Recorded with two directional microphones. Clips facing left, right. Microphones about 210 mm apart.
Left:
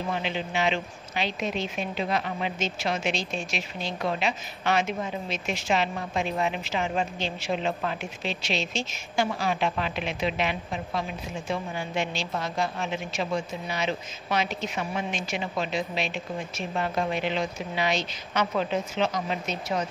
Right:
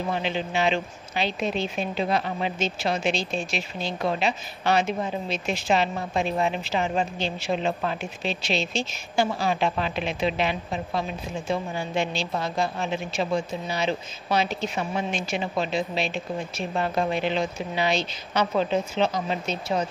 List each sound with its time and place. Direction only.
0.2 s a woman's voice: 35° right (ahead or behind)